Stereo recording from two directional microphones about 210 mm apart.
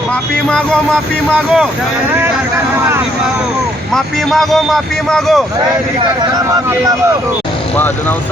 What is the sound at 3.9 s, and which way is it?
Speech, centre (ahead or behind).